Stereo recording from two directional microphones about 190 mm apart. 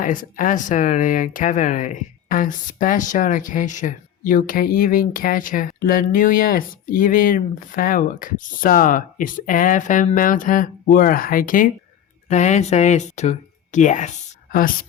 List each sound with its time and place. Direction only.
0.0 s speech: 45° left (ahead or behind)